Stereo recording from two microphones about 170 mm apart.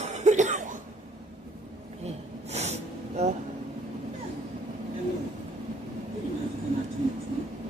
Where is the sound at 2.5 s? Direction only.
40° right (ahead or behind).